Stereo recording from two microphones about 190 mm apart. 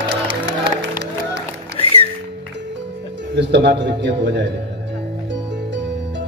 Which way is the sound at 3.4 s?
65° right (ahead or behind).